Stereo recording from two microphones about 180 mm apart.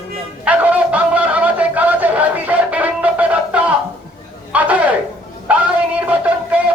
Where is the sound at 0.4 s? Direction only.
10° right (ahead or behind).